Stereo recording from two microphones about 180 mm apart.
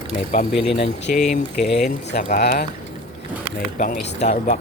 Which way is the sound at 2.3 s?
60° left (ahead or behind).